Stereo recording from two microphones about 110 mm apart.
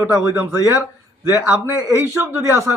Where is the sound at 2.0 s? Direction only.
20° right (ahead or behind).